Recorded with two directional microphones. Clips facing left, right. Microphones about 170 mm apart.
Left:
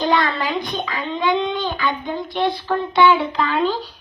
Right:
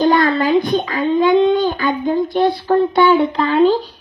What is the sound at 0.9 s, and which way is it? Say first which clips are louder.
Speech: right 7 dB; 45° right (ahead or behind).